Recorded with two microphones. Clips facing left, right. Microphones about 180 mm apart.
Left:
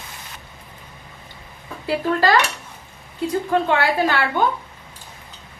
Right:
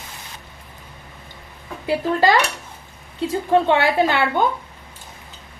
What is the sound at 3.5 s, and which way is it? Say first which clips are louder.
Speech: right 4 dB; 25° right (ahead or behind).